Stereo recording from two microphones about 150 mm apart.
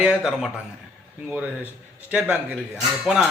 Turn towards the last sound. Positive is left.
turn(degrees=-5)  # may be behind; listen again after turning